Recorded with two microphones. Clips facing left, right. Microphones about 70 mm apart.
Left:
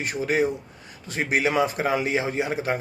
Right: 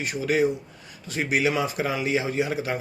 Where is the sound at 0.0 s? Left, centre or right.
Left.